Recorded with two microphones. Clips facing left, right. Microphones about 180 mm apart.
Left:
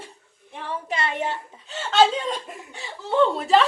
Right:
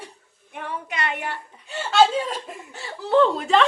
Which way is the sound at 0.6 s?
30° left (ahead or behind).